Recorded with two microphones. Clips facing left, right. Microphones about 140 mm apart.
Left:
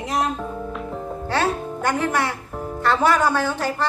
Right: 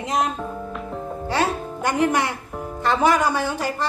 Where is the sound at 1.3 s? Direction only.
10° right (ahead or behind).